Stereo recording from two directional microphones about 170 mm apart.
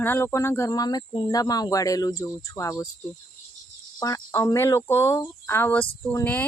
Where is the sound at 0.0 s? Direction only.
10° left (ahead or behind).